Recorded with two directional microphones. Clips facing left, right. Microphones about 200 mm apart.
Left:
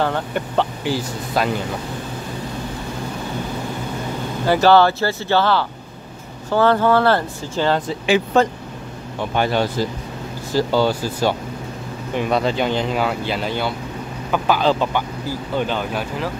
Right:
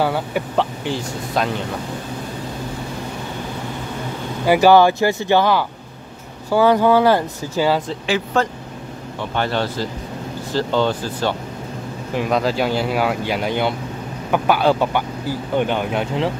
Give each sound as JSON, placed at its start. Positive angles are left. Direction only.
{"t": 0.0, "sound": "speech", "side_deg": -5}
{"t": 4.5, "sound": "speech", "side_deg": -15}
{"t": 7.9, "sound": "speech", "side_deg": 15}
{"t": 12.1, "sound": "speech", "side_deg": 0}